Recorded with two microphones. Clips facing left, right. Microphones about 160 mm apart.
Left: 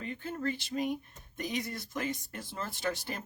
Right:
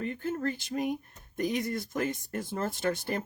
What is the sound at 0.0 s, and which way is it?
Speech, 50° right (ahead or behind).